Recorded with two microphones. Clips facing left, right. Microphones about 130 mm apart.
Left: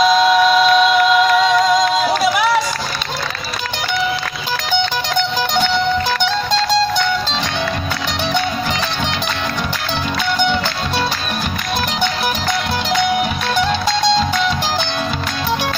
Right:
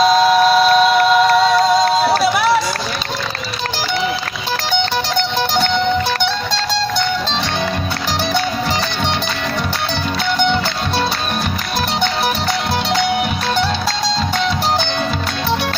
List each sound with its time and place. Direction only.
0.7 s music: 40° right (ahead or behind)